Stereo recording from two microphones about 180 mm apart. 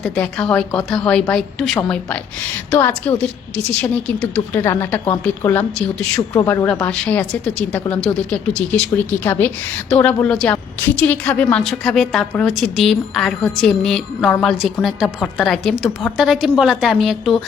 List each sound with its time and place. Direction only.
0.0 s a woman's voice: 5° left (ahead or behind)
4.5 s speech: 15° left (ahead or behind)
6.9 s a woman's voice: 5° left (ahead or behind)